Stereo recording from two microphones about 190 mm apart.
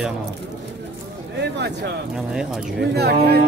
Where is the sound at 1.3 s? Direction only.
65° right (ahead or behind).